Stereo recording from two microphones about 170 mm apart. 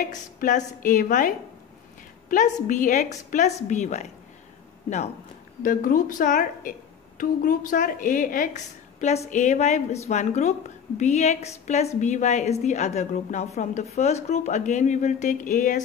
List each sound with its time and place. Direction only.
0.1 s speech: 45° left (ahead or behind)
5.6 s a woman's voice: 55° left (ahead or behind)